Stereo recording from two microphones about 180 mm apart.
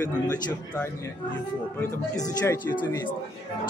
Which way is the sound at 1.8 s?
15° left (ahead or behind).